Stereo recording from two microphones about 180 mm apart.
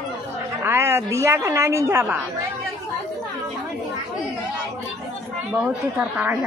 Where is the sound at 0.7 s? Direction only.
15° right (ahead or behind).